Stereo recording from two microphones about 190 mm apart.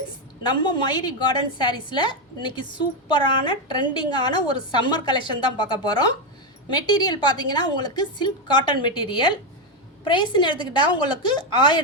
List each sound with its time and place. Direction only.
0.4 s a woman's voice: 25° left (ahead or behind)